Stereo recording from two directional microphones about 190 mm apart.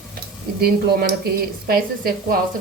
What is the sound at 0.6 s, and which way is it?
Speech, 55° right (ahead or behind).